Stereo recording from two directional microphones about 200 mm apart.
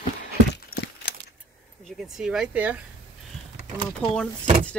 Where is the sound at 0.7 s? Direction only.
90° left.